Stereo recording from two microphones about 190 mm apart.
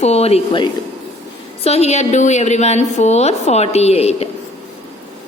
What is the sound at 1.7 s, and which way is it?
A woman's voice, 35° left (ahead or behind).